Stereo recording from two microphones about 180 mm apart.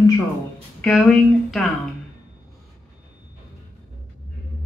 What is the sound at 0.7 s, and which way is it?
Speech, 5° left (ahead or behind).